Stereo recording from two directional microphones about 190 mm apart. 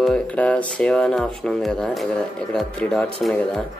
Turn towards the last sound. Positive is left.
turn(degrees=5)  # may be behind; listen again after turning